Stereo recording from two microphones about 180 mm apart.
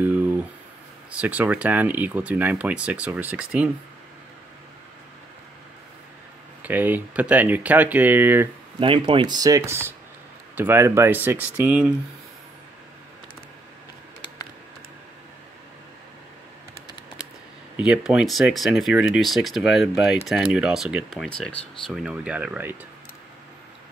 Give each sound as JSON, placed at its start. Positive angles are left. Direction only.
{"t": 1.1, "sound": "speech", "side_deg": -10}
{"t": 6.6, "sound": "speech", "side_deg": -10}
{"t": 8.7, "sound": "speech", "side_deg": -30}
{"t": 17.7, "sound": "speech", "side_deg": -5}